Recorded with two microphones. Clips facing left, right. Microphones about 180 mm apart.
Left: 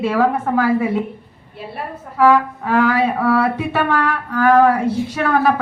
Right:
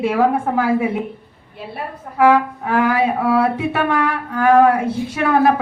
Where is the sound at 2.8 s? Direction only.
15° right (ahead or behind).